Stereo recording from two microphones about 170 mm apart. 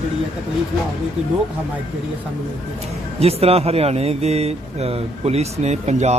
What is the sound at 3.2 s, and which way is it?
Speech, 35° right (ahead or behind).